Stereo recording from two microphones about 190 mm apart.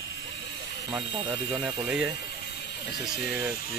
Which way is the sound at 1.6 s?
5° right (ahead or behind).